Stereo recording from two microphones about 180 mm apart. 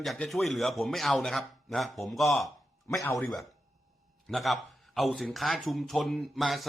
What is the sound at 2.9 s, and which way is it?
Speech, 15° left (ahead or behind).